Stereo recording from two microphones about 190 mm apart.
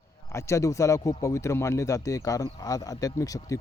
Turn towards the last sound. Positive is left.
turn(degrees=15)  # may be behind; listen again after turning